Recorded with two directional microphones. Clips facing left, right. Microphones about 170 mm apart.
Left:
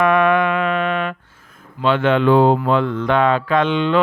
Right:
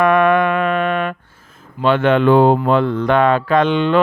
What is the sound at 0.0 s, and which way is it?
Music, 50° right (ahead or behind).